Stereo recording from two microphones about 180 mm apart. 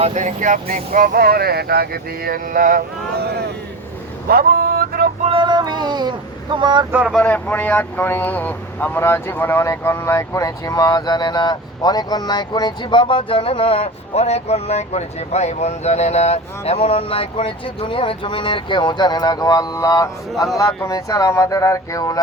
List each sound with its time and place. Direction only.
0.0 s speech: 40° right (ahead or behind)
4.3 s vehicle: 55° right (ahead or behind)
5.2 s a sound: 30° right (ahead or behind)
6.9 s speech: 10° right (ahead or behind)
7.2 s speech: 5° left (ahead or behind)